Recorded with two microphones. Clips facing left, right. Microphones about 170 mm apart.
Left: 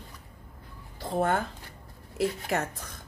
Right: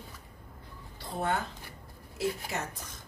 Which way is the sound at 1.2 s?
50° left (ahead or behind).